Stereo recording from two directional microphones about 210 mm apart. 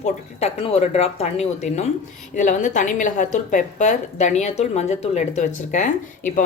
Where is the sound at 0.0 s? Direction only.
30° left (ahead or behind).